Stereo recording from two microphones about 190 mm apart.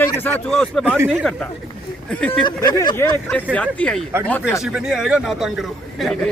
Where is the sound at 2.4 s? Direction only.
20° left (ahead or behind).